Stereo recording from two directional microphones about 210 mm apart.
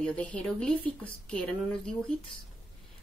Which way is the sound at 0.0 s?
5° left (ahead or behind).